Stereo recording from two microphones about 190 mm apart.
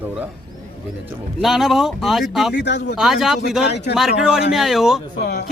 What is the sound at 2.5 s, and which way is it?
Speech, 65° left (ahead or behind).